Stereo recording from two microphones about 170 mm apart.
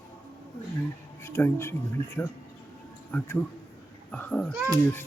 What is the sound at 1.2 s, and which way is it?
Speech, 15° left (ahead or behind).